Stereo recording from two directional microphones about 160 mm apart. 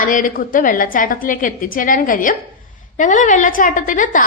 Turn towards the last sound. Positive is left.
turn(degrees=55)  # may be behind; listen again after turning